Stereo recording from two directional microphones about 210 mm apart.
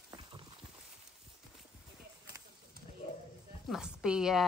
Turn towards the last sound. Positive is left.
turn(degrees=0)  # may be behind; listen again after turning